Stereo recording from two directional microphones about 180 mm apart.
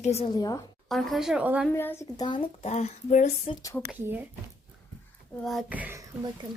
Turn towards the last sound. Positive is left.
turn(degrees=-15)  # may be behind; listen again after turning